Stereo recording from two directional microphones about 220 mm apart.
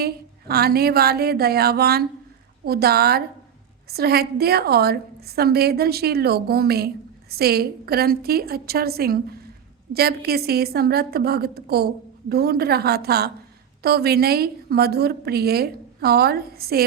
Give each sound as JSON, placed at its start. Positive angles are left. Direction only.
{"t": 0.0, "sound": "a woman's voice", "side_deg": -45}